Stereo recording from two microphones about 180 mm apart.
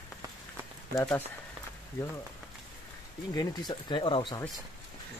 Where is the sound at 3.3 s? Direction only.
20° left (ahead or behind).